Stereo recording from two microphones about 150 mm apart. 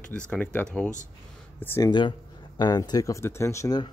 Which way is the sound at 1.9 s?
30° left (ahead or behind).